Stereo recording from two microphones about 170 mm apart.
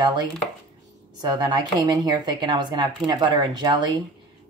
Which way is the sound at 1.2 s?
25° right (ahead or behind).